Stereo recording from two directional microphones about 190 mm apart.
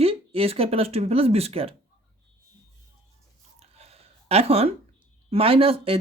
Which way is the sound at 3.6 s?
30° right (ahead or behind).